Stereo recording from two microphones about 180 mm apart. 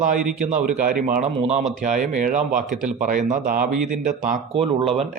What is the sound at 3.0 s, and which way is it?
Speech, 50° right (ahead or behind).